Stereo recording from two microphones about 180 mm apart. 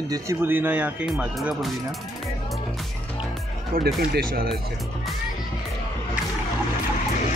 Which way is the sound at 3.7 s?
60° right (ahead or behind).